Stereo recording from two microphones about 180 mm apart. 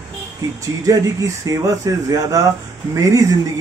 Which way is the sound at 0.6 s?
20° right (ahead or behind).